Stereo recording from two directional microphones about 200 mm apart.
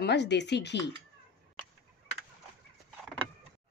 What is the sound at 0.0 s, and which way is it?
Speech, 60° left (ahead or behind).